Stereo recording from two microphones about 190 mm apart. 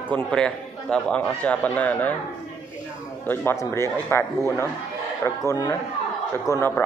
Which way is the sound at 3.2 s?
10° left (ahead or behind).